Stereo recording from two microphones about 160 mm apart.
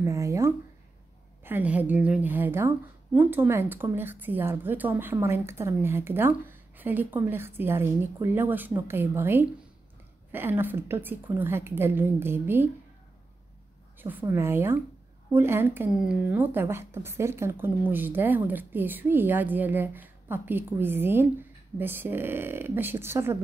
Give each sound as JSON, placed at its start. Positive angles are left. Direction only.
{"t": 0.0, "sound": "a sound", "side_deg": -20}
{"t": 1.4, "sound": "a woman's voice", "side_deg": -10}
{"t": 13.9, "sound": "a woman's voice", "side_deg": -10}